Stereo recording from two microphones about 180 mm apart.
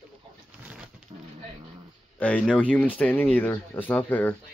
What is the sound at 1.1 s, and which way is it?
Dog, 30° right (ahead or behind).